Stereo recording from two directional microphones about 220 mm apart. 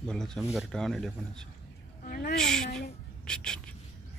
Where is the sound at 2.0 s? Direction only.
40° left (ahead or behind).